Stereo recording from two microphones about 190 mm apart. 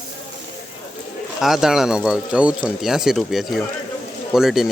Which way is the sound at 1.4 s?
Centre (ahead or behind).